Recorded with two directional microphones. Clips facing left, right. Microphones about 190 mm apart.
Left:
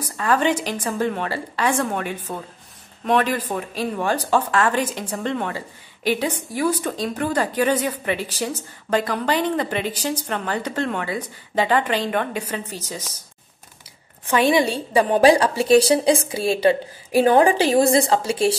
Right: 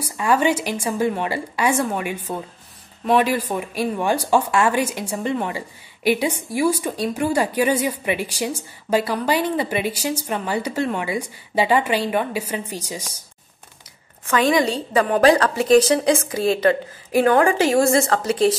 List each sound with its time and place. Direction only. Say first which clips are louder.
0.0 s a woman's voice: right 1 dB; 10° right (ahead or behind)
14.3 s a woman's voice: even; 25° left (ahead or behind)
14.7 s a woman's voice: left 1 dB; 10° left (ahead or behind)
15.7 s speech: even; 30° left (ahead or behind)
17.2 s a woman's voice: left 1 dB; 20° left (ahead or behind)